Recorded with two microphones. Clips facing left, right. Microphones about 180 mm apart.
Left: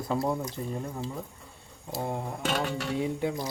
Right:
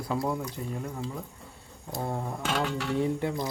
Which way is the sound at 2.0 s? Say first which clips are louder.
Even; 15° left (ahead or behind).